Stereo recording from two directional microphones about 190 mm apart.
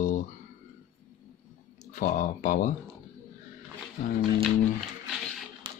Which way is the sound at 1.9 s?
45° left (ahead or behind).